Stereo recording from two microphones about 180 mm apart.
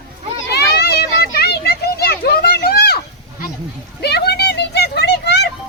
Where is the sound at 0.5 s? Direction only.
65° left (ahead or behind).